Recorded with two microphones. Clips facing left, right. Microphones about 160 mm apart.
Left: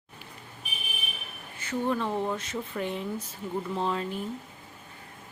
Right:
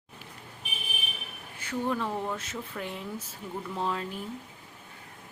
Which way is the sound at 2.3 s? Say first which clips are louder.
Left 4 dB; 5° right (ahead or behind).